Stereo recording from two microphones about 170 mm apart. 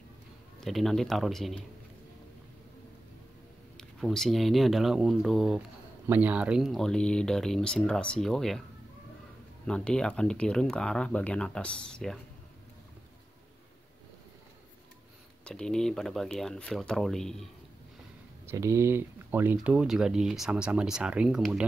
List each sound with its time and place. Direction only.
0.6 s speech: centre (ahead or behind)
3.7 s speech: centre (ahead or behind)
9.7 s speech: 5° left (ahead or behind)
15.4 s speech: 5° left (ahead or behind)
18.5 s speech: 15° right (ahead or behind)